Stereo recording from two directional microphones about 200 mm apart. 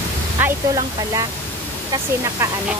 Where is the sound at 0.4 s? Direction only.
20° right (ahead or behind).